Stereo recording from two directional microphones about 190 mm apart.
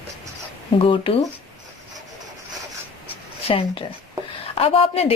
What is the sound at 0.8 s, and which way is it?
Speech, 30° left (ahead or behind).